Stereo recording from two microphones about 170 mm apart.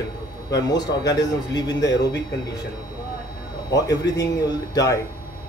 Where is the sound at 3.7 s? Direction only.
20° left (ahead or behind).